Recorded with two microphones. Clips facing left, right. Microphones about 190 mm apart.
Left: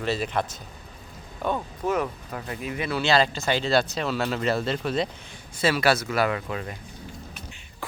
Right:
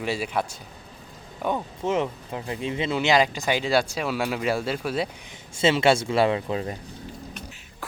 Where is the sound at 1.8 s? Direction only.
25° right (ahead or behind); by 5.1 s 10° right (ahead or behind).